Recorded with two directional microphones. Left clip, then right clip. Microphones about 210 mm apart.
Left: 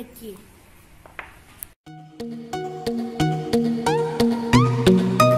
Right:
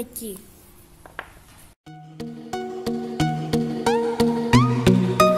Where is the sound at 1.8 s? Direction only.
Centre (ahead or behind).